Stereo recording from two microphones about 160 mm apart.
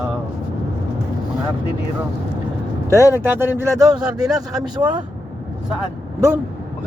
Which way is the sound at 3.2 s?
15° right (ahead or behind).